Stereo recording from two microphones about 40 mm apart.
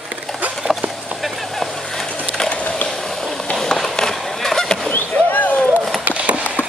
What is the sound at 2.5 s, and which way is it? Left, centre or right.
Skateboard, left.